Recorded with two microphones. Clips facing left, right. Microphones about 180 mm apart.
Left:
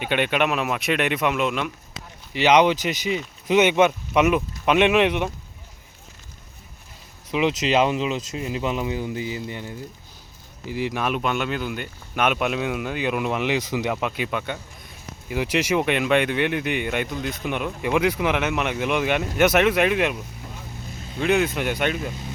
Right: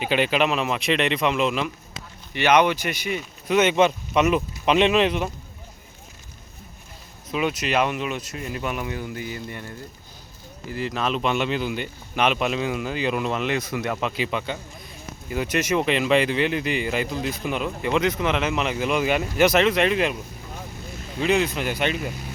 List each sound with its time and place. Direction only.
0.1 s speech: centre (ahead or behind)
2.3 s speech: 15° left (ahead or behind)
7.3 s speech: 15° left (ahead or behind)
10.7 s speech: 85° left
10.9 s speech: 10° left (ahead or behind)
21.2 s speech: centre (ahead or behind)